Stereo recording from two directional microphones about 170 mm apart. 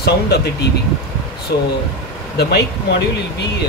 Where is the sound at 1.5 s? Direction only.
60° left (ahead or behind).